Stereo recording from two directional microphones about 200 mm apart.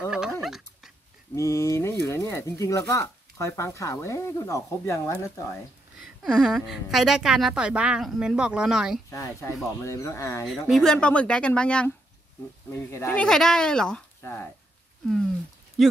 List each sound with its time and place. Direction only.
0.1 s dog: centre (ahead or behind)
1.3 s a sound: 15° left (ahead or behind)
2.0 s speech: 15° left (ahead or behind)
6.2 s a woman's voice: 5° right (ahead or behind)
9.1 s speech: 15° left (ahead or behind)
10.7 s a woman's voice: centre (ahead or behind)